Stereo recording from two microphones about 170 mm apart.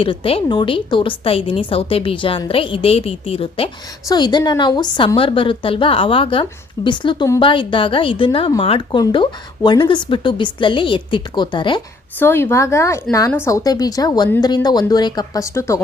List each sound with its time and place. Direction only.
0.0 s a woman's voice: 30° left (ahead or behind)
12.2 s a woman's voice: 15° left (ahead or behind)